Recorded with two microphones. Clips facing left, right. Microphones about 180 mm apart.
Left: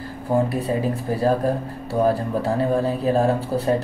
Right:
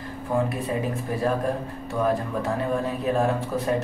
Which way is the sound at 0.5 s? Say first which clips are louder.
Left 4 dB; 35° left (ahead or behind).